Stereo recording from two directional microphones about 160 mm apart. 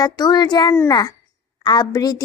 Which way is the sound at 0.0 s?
25° left (ahead or behind).